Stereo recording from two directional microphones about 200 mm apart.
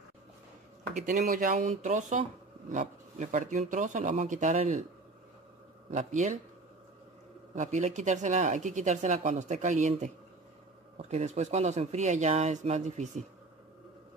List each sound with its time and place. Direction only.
0.9 s speech: 35° right (ahead or behind)
5.9 s speech: 35° right (ahead or behind)
7.5 s speech: 35° right (ahead or behind)